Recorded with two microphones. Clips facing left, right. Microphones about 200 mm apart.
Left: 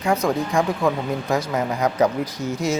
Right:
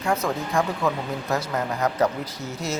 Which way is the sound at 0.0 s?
15° left (ahead or behind).